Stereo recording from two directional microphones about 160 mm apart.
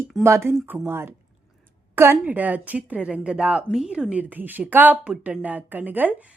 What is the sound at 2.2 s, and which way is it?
Speech, 10° right (ahead or behind).